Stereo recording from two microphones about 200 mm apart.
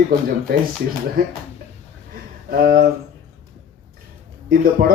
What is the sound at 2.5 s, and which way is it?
Speech, 50° right (ahead or behind).